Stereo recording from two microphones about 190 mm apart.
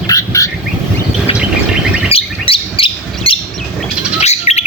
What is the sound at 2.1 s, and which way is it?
Bird, 30° left (ahead or behind).